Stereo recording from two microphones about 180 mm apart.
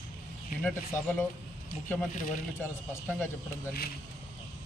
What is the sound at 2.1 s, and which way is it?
Speech, 50° left (ahead or behind).